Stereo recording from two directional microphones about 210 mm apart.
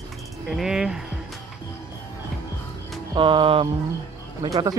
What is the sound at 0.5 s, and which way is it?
Speech, centre (ahead or behind).